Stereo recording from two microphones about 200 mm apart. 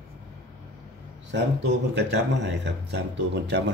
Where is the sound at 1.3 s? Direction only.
60° right (ahead or behind).